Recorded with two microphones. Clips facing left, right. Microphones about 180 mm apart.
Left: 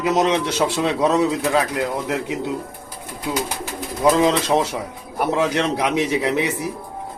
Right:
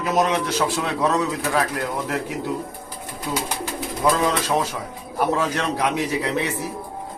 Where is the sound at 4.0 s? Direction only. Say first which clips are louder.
Left 4 dB; 20° left (ahead or behind).